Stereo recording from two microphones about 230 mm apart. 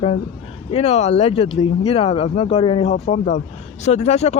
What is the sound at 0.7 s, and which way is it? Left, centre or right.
Speech, left.